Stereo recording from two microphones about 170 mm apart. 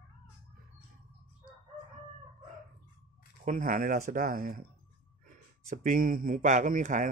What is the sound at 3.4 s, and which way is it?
Speech, 55° right (ahead or behind).